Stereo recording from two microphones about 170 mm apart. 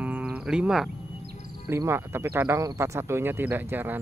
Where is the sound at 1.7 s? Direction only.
15° right (ahead or behind).